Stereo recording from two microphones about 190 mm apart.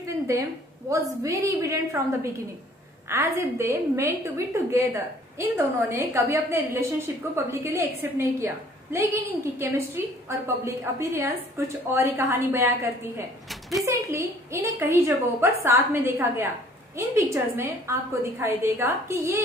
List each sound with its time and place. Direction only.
0.0 s a woman's voice: 15° right (ahead or behind)
13.5 s a sound: centre (ahead or behind)
13.8 s a woman's voice: 15° right (ahead or behind)